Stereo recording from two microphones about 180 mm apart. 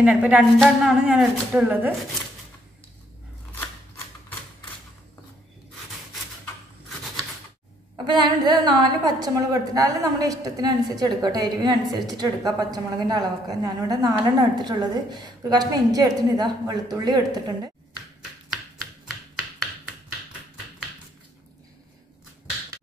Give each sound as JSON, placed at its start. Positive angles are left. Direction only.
{"t": 0.0, "sound": "speech", "side_deg": -5}
{"t": 8.1, "sound": "a woman's voice", "side_deg": -25}